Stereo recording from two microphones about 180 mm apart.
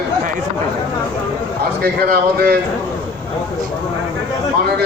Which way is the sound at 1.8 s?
55° right (ahead or behind).